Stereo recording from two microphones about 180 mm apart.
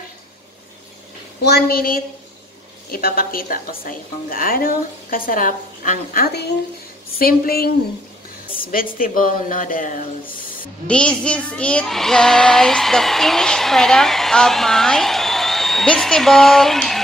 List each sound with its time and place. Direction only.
1.4 s a woman's voice: 60° left (ahead or behind)
8.7 s a woman's voice: 50° left (ahead or behind)
10.9 s a child's voice: 5° left (ahead or behind)